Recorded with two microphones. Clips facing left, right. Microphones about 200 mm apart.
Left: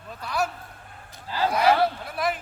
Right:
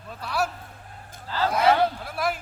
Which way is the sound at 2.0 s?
Centre (ahead or behind).